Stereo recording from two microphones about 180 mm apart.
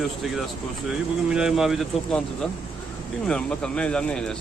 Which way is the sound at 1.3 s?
5° right (ahead or behind).